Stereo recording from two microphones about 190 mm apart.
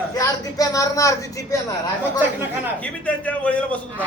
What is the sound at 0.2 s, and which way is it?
Speech, 20° left (ahead or behind).